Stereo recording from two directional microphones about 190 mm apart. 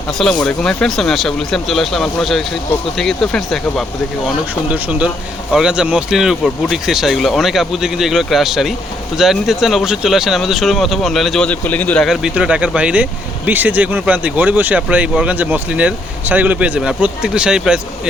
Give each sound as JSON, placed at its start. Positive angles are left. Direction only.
{"t": 0.4, "sound": "speech", "side_deg": 5}